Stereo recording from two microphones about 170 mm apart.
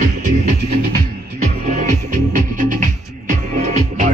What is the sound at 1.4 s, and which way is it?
Music, 45° right (ahead or behind).